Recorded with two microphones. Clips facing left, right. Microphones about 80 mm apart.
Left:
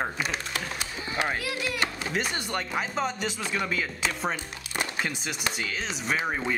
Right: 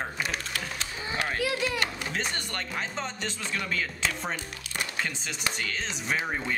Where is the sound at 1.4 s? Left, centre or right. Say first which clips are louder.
Right 3 dB; right.